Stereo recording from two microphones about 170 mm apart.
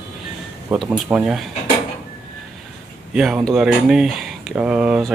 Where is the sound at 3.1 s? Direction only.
5° right (ahead or behind).